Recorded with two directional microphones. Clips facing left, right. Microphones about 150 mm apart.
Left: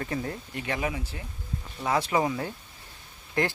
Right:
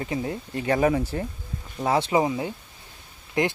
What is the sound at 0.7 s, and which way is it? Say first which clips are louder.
Speech: right 11 dB; 45° right (ahead or behind).